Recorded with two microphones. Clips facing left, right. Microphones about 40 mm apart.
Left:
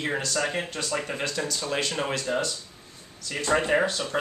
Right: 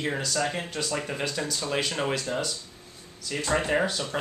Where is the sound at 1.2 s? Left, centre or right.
Centre.